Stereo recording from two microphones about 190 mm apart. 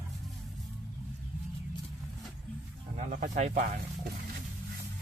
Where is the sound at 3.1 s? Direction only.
45° right (ahead or behind).